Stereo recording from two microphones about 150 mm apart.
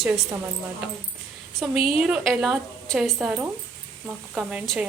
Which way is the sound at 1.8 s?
40° left (ahead or behind).